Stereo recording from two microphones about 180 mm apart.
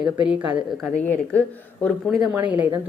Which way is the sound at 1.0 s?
10° left (ahead or behind).